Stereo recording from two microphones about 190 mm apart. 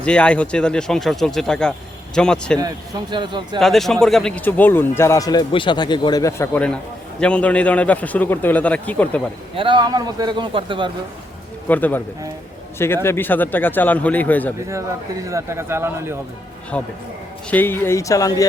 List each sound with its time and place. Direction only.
0.0 s speech: 5° left (ahead or behind)
2.6 s a man's voice: 20° right (ahead or behind)
3.6 s speech: centre (ahead or behind)
9.6 s a man's voice: 25° right (ahead or behind)
11.7 s speech: 10° left (ahead or behind)
14.7 s speech: 15° right (ahead or behind)
16.7 s speech: 10° left (ahead or behind)